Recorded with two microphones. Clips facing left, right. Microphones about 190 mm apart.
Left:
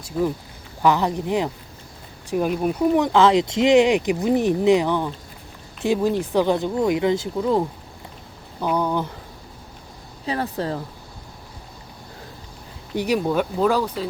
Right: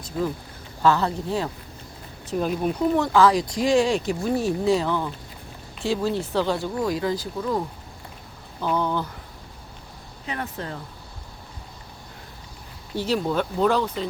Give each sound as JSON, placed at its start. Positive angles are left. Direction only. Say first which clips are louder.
{"t": 0.8, "sound": "speech", "louder": "left 2 dB", "side_deg": 15}
{"t": 8.6, "sound": "speech", "louder": "left 2 dB", "side_deg": 15}
{"t": 10.2, "sound": "speech", "louder": "left 7 dB", "side_deg": 35}
{"t": 13.0, "sound": "speech", "louder": "left 3 dB", "side_deg": 15}